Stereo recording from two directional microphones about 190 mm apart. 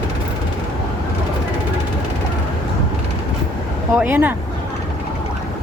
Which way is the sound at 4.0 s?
10° right (ahead or behind).